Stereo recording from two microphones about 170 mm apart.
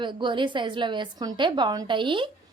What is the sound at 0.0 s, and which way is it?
Speech, 30° right (ahead or behind).